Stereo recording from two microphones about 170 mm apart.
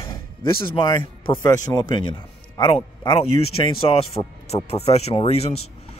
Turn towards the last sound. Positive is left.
turn(degrees=35)  # may be behind; listen again after turning